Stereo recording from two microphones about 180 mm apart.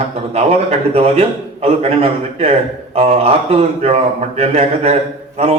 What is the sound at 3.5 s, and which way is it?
A man's voice, 35° right (ahead or behind).